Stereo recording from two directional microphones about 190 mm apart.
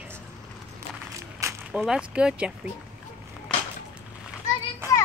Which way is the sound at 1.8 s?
5° right (ahead or behind).